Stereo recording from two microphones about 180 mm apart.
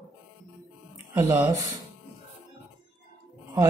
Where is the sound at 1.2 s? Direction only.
20° right (ahead or behind).